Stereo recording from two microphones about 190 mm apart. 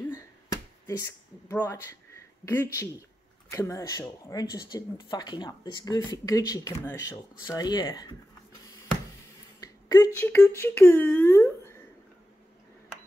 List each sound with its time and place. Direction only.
0.1 s a sound: 15° left (ahead or behind)
3.4 s speech: 15° left (ahead or behind)
9.6 s speech: 20° left (ahead or behind)